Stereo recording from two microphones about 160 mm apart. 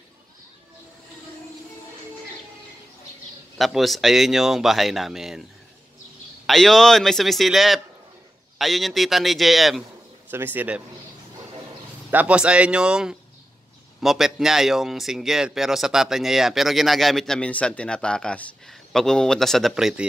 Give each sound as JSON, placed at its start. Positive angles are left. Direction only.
{"t": 3.5, "sound": "speech", "side_deg": 0}
{"t": 6.4, "sound": "speech", "side_deg": 0}
{"t": 10.3, "sound": "speech", "side_deg": -10}
{"t": 12.1, "sound": "speech", "side_deg": -10}